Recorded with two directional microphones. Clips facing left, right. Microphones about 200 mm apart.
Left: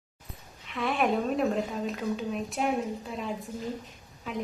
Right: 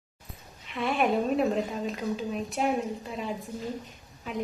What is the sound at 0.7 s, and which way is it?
Speech, centre (ahead or behind).